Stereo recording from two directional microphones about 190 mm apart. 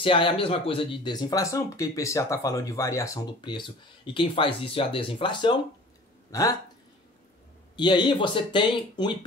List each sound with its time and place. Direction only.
0.0 s speech: 25° left (ahead or behind)
7.7 s speech: 25° left (ahead or behind)